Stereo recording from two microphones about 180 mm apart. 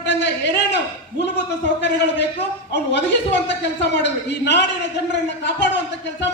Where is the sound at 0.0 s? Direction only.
75° left (ahead or behind).